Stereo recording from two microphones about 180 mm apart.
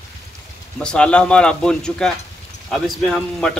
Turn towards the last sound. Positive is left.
turn(degrees=0)  # may be behind; listen again after turning